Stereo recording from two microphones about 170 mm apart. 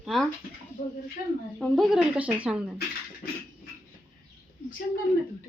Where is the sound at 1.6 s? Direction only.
Centre (ahead or behind).